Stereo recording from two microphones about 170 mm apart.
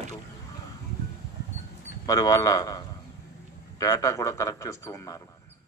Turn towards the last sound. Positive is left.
turn(degrees=20)  # may be behind; listen again after turning